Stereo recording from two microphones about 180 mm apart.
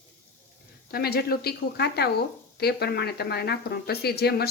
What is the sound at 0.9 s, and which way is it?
Speech, 60° left (ahead or behind).